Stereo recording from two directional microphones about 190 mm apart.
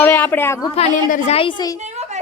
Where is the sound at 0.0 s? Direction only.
10° left (ahead or behind).